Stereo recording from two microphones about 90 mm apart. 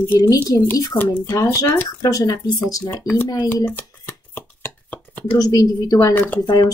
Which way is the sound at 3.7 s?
25° left (ahead or behind).